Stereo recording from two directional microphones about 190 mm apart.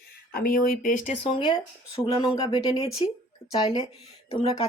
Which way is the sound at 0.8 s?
40° left (ahead or behind).